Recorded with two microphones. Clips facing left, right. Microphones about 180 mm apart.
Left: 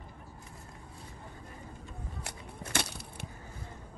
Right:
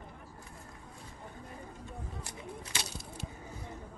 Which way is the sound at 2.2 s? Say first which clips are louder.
Even; 55° left (ahead or behind).